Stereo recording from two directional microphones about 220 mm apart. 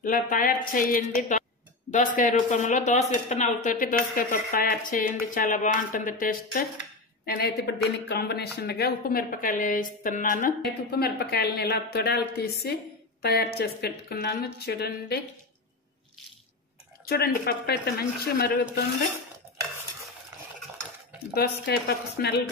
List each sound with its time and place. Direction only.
0.0 s speech: 40° left (ahead or behind)
17.1 s speech: 45° left (ahead or behind)
21.4 s speech: 45° left (ahead or behind)